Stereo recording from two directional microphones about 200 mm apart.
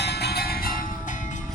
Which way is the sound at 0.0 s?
55° left (ahead or behind).